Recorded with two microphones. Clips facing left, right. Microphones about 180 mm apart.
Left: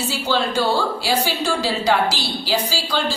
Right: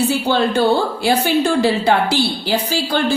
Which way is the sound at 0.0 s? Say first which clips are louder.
Right 5 dB; 60° right (ahead or behind).